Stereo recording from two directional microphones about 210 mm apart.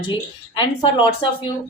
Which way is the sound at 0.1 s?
25° left (ahead or behind).